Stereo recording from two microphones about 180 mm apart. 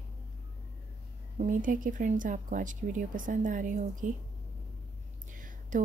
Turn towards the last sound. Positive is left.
turn(degrees=-50)  # may be behind; listen again after turning